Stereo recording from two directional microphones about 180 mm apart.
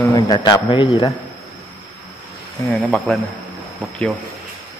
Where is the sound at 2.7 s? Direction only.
5° left (ahead or behind).